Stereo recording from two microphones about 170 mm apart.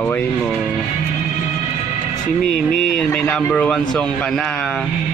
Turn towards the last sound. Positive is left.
turn(degrees=10)  # may be behind; listen again after turning